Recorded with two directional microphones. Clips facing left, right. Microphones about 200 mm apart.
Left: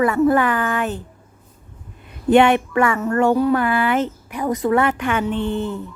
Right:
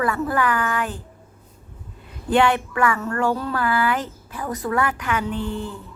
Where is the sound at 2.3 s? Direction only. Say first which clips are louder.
Left 5 dB; 20° left (ahead or behind).